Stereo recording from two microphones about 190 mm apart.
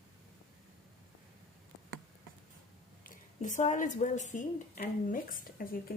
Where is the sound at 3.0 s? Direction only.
45° left (ahead or behind).